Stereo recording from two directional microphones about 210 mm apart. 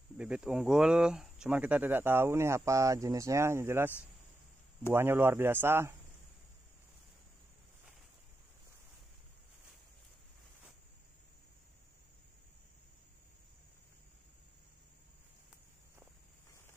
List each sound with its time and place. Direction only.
0.2 s speech: 5° right (ahead or behind)
4.9 s speech: 10° right (ahead or behind)